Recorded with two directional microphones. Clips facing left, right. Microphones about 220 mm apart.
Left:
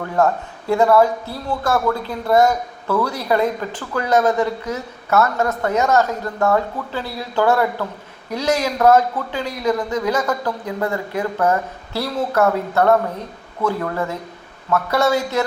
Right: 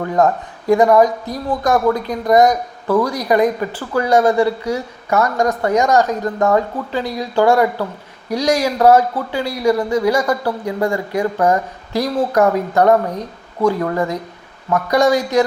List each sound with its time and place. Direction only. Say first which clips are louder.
0.2 s speech: right 1 dB; 20° right (ahead or behind)